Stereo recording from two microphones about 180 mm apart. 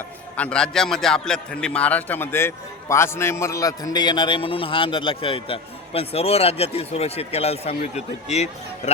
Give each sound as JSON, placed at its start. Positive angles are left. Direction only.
{"t": 0.3, "sound": "a man's voice", "side_deg": 5}